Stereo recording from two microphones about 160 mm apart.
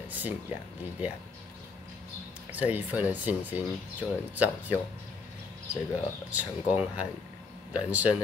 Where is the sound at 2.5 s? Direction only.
10° right (ahead or behind).